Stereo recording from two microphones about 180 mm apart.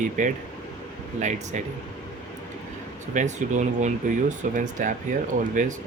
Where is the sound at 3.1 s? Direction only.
45° right (ahead or behind).